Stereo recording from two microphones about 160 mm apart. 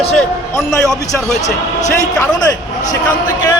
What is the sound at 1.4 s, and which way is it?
Speech, 50° left (ahead or behind).